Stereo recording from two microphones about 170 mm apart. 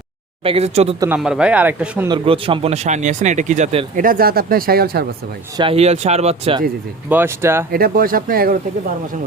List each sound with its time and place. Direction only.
0.4 s speech: 35° right (ahead or behind)
0.9 s speech: 15° right (ahead or behind)
1.2 s speech: 5° right (ahead or behind)
2.0 s speech: 30° right (ahead or behind)
3.9 s speech: 55° right (ahead or behind)
5.5 s speech: 35° right (ahead or behind)
7.1 s speech: 15° right (ahead or behind)
7.7 s speech: 60° right (ahead or behind)